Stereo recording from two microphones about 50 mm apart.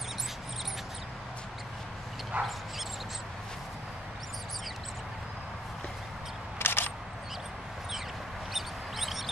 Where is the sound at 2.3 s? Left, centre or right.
Right.